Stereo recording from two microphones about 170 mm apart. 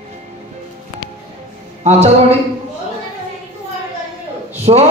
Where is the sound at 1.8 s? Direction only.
40° right (ahead or behind).